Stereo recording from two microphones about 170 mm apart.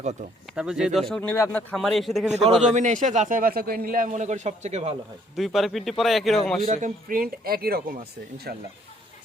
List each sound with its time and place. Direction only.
0.5 s speech: 5° right (ahead or behind)
2.4 s a man's voice: 45° right (ahead or behind)
5.4 s speech: centre (ahead or behind)
6.7 s speech: 50° right (ahead or behind)